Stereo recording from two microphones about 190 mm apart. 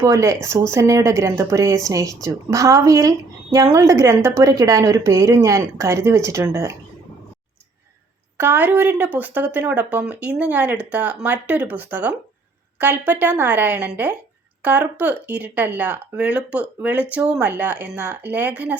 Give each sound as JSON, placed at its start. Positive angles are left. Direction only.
{"t": 0.0, "sound": "speech", "side_deg": -15}
{"t": 8.4, "sound": "speech", "side_deg": -10}